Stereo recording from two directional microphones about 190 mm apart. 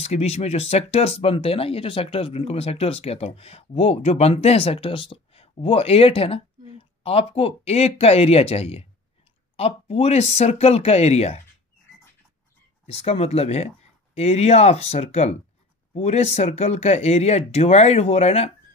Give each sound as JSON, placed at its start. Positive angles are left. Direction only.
{"t": 0.0, "sound": "speech", "side_deg": 35}
{"t": 12.8, "sound": "speech", "side_deg": 35}